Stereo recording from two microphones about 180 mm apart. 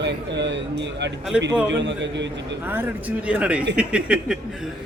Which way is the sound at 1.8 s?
80° right.